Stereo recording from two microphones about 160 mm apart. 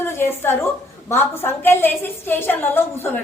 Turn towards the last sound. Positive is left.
turn(degrees=15)  # may be behind; listen again after turning